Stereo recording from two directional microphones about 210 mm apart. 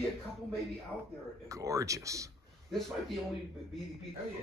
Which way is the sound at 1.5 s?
15° right (ahead or behind).